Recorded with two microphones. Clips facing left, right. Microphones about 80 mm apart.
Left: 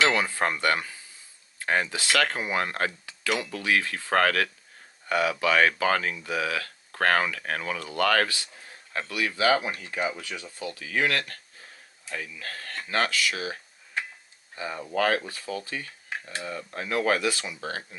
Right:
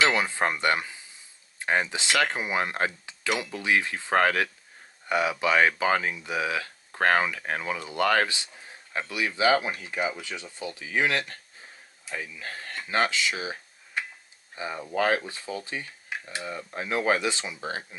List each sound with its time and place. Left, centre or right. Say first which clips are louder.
0.1 s speech: even; centre
10.6 s speech: even; right
16.1 s speech: left 1 dB; centre